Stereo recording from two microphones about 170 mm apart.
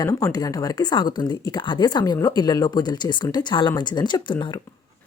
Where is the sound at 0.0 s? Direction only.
20° left (ahead or behind).